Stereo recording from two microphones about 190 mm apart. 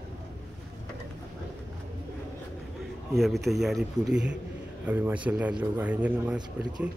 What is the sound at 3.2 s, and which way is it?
Speech, centre (ahead or behind).